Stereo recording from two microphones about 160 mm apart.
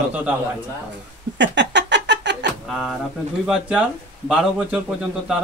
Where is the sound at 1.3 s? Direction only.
90° right.